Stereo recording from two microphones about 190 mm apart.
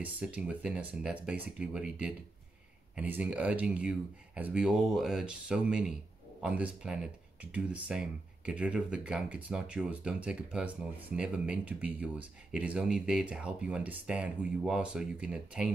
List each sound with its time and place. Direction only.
0.0 s speech: 5° right (ahead or behind)